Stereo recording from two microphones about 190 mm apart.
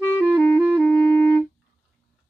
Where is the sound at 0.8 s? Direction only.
10° left (ahead or behind).